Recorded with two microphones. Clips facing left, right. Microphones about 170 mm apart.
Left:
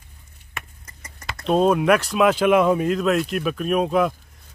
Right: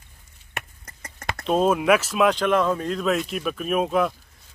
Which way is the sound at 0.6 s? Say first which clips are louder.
Right 2 dB; 60° right (ahead or behind).